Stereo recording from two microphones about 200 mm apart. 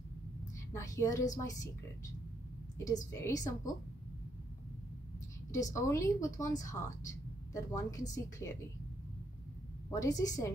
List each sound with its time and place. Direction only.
0.7 s a woman's voice: 15° left (ahead or behind)
3.1 s a woman's voice: 15° left (ahead or behind)
5.5 s a woman's voice: 15° left (ahead or behind)
9.8 s a woman's voice: 15° left (ahead or behind)